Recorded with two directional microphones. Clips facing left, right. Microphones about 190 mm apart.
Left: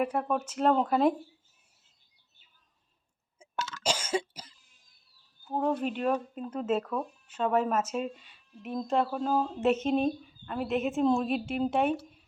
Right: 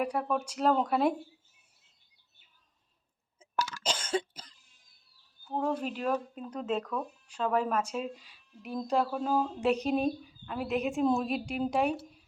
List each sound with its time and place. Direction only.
0.2 s speech: centre (ahead or behind)
3.8 s cough: 10° left (ahead or behind)
5.5 s speech: 5° left (ahead or behind)